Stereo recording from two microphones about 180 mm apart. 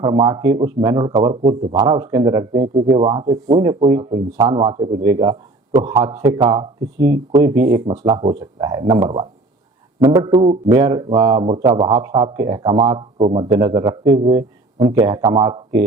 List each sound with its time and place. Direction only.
0.0 s speech: 25° right (ahead or behind)
10.0 s speech: 15° right (ahead or behind)
10.4 s speech: 30° right (ahead or behind)
10.8 s speech: 20° right (ahead or behind)